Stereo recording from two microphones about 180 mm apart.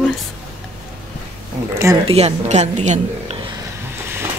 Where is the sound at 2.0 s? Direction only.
35° right (ahead or behind).